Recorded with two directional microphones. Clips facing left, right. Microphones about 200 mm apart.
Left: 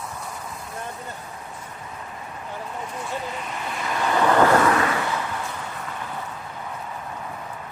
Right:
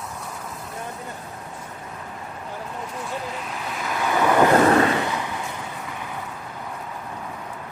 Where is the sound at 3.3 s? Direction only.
Centre (ahead or behind).